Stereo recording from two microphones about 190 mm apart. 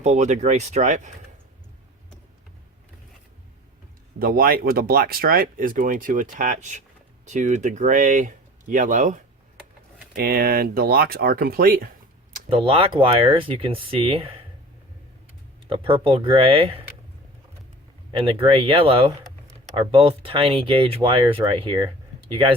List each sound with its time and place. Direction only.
0.0 s speech: 35° right (ahead or behind)
4.2 s speech: 50° right (ahead or behind)
10.2 s speech: 55° right (ahead or behind)
12.5 s speech: 30° right (ahead or behind)
15.6 s speech: 30° right (ahead or behind)
18.1 s speech: 25° right (ahead or behind)